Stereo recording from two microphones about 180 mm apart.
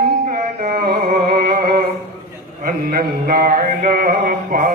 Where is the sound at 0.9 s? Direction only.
55° right (ahead or behind).